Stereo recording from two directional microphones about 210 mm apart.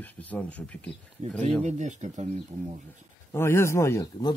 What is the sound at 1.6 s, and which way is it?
Speech, 35° right (ahead or behind).